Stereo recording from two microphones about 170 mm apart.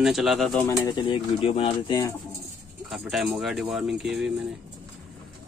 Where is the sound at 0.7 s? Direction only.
20° left (ahead or behind).